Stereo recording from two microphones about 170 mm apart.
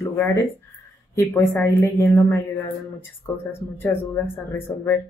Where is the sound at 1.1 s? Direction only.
15° left (ahead or behind).